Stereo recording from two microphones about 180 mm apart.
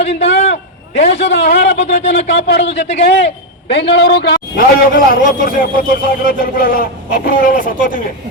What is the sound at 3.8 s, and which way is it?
A man's voice, 70° left (ahead or behind).